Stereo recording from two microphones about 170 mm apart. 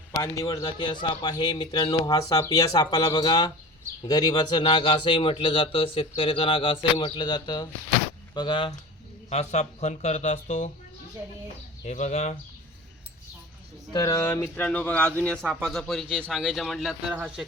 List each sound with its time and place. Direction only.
0.2 s a man's voice: 20° left (ahead or behind)
9.3 s speech: 40° left (ahead or behind)
11.9 s speech: 40° left (ahead or behind)
13.9 s a man's voice: 20° left (ahead or behind); by 17.4 s 5° right (ahead or behind)